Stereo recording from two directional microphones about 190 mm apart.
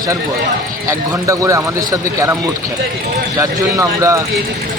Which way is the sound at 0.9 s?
15° right (ahead or behind).